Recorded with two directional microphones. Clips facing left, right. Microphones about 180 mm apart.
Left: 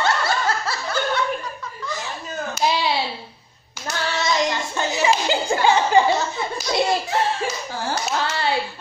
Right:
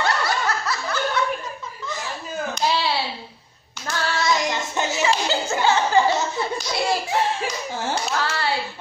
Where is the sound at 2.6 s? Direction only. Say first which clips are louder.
Left 2 dB; 15° left (ahead or behind).